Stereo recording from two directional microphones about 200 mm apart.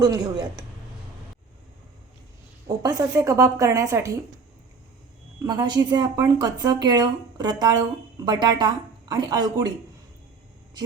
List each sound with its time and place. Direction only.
0.0 s a woman's voice: 20° right (ahead or behind)
2.6 s a woman's voice: 20° right (ahead or behind)
5.4 s a woman's voice: 20° right (ahead or behind)